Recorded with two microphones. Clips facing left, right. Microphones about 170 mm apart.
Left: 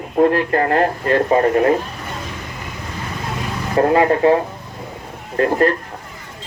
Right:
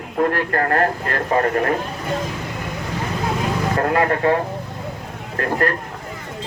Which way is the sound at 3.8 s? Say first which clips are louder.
Left 7 dB; 20° left (ahead or behind).